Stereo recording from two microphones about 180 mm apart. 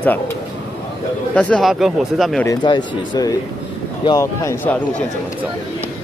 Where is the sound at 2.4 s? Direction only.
20° left (ahead or behind).